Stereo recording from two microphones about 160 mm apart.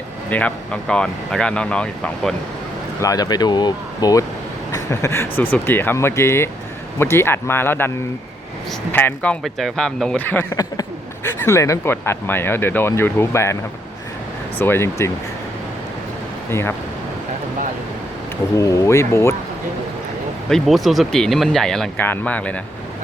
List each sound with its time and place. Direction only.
0.3 s speech: 10° left (ahead or behind)
3.0 s speech: 20° left (ahead or behind)
14.6 s speech: 15° left (ahead or behind)
16.5 s speech: 15° left (ahead or behind)
18.5 s speech: 20° left (ahead or behind)
20.5 s speech: centre (ahead or behind)